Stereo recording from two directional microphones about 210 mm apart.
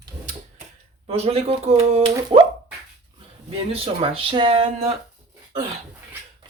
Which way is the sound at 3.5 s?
25° right (ahead or behind).